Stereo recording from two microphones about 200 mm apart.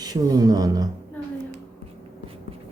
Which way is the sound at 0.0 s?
20° right (ahead or behind).